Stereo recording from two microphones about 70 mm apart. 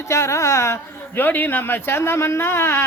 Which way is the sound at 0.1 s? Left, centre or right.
Left.